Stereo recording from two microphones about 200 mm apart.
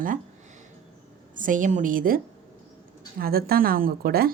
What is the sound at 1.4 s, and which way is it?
A woman's voice, 40° right (ahead or behind).